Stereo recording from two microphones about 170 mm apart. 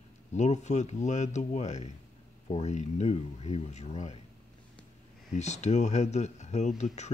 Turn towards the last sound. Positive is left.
turn(degrees=40)  # may be behind; listen again after turning